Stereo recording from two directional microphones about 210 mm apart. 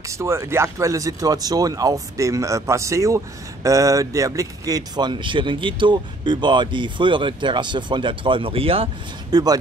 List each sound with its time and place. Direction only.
0.1 s speech: 15° right (ahead or behind)